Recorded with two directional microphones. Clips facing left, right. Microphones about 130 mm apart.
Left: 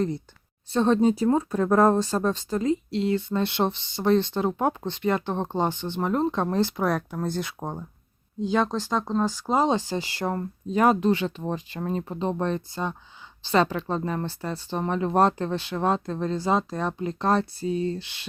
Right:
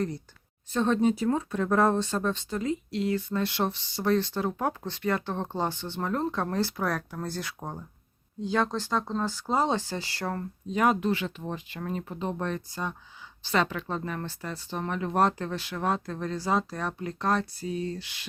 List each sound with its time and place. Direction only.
0.7 s speech: 35° left (ahead or behind)
10.7 s speech: 35° left (ahead or behind)